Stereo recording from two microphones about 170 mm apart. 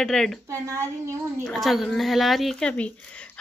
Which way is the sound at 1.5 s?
Centre (ahead or behind).